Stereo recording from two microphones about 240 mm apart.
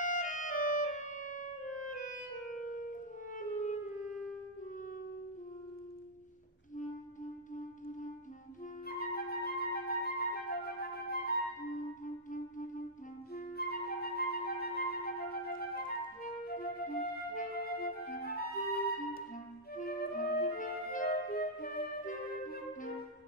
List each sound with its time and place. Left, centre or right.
0.0 s clarinet: left
7.5 s music: left
8.8 s flute: left
12.0 s music: left
13.3 s flute: left